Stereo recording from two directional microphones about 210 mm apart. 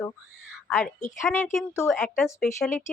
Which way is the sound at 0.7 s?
5° left (ahead or behind).